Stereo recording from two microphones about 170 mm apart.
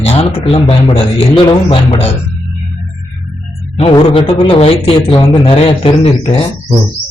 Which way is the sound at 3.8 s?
30° left (ahead or behind).